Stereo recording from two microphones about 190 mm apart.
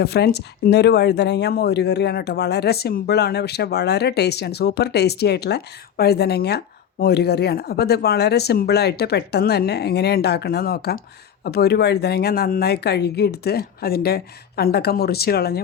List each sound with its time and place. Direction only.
0.0 s speech: 60° left (ahead or behind)